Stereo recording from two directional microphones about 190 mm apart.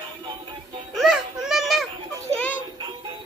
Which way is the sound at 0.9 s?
Centre (ahead or behind).